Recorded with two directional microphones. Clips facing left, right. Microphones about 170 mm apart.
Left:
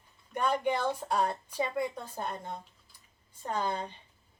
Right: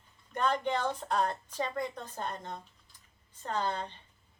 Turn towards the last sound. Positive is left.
turn(degrees=10)  # may be behind; listen again after turning